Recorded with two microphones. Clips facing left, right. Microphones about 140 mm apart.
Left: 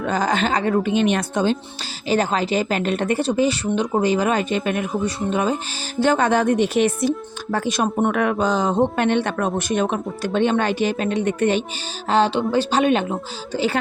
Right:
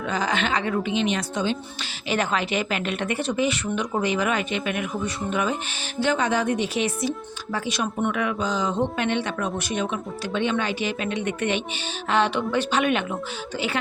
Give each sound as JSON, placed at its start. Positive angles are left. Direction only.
{"t": 0.0, "sound": "speech", "side_deg": 45}
{"t": 2.0, "sound": "speech", "side_deg": 35}
{"t": 6.0, "sound": "speech", "side_deg": 50}